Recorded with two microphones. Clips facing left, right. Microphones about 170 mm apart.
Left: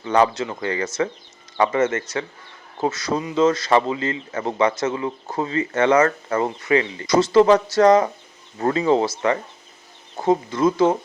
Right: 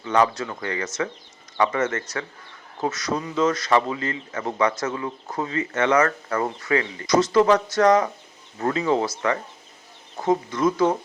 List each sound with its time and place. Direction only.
0.0 s speech: 30° left (ahead or behind)